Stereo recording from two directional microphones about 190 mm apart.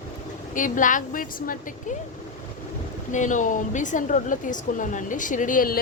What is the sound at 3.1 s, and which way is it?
A woman's voice, 40° left (ahead or behind).